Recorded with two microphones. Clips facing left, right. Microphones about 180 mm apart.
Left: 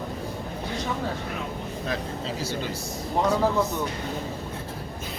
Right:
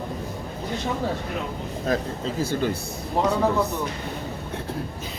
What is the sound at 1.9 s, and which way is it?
Speech, 50° right (ahead or behind).